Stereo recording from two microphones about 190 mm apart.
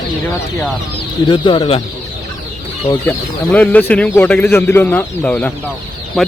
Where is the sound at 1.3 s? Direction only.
25° left (ahead or behind).